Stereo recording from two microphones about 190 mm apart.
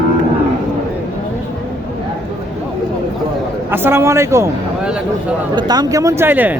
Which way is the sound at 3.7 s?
10° right (ahead or behind).